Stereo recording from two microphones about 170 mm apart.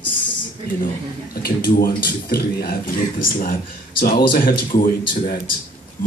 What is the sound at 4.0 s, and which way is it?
Speech, 60° left (ahead or behind).